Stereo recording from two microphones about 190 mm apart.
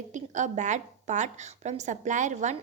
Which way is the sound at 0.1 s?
40° right (ahead or behind).